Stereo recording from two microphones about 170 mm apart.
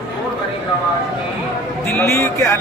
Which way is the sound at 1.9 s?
15° left (ahead or behind).